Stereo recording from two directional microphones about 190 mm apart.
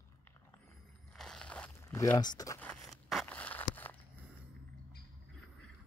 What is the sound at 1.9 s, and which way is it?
Speech, 20° left (ahead or behind).